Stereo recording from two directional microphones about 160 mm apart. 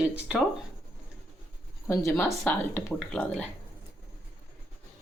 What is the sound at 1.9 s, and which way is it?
Speech, 15° left (ahead or behind).